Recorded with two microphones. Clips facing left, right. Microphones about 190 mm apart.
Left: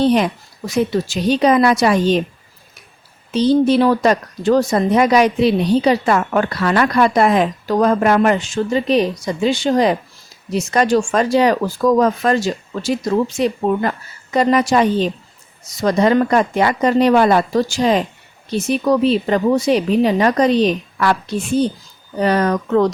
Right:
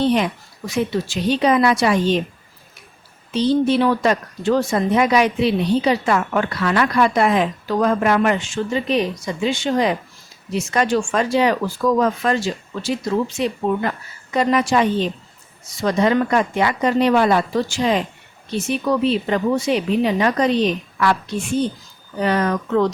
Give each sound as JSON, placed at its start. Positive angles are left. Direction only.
{"t": 0.0, "sound": "speech", "side_deg": 40}
{"t": 3.3, "sound": "speech", "side_deg": 40}